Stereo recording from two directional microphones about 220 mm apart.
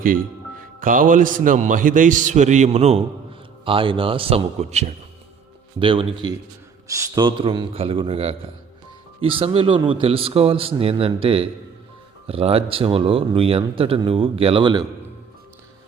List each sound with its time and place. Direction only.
0.0 s a man's voice: 40° right (ahead or behind); by 14.8 s 20° right (ahead or behind)